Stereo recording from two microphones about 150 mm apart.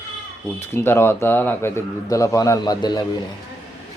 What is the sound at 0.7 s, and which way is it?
A man's voice, 15° left (ahead or behind).